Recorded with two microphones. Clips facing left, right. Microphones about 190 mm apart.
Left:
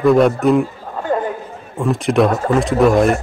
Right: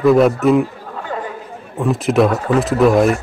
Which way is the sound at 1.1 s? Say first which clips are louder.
Left 7 dB; 45° left (ahead or behind).